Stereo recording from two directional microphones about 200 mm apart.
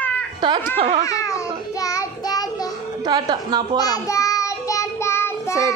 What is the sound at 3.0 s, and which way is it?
Speech, 20° right (ahead or behind).